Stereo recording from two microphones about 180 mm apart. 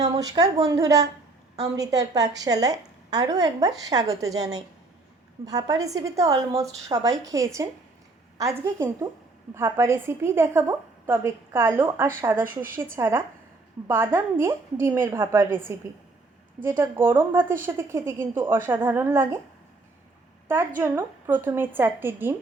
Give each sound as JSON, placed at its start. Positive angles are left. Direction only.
{"t": 0.0, "sound": "a woman's voice", "side_deg": -20}
{"t": 20.5, "sound": "a woman's voice", "side_deg": -15}